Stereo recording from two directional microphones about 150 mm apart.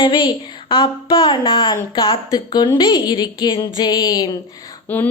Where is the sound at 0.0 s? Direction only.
30° left (ahead or behind).